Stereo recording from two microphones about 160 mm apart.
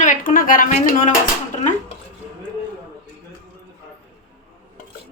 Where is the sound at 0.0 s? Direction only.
55° left (ahead or behind).